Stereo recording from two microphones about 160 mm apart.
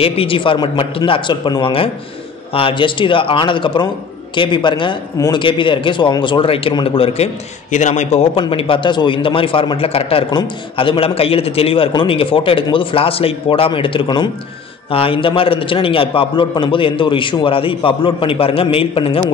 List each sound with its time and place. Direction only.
0.0 s a man's voice: 35° left (ahead or behind)
7.7 s a man's voice: 50° left (ahead or behind)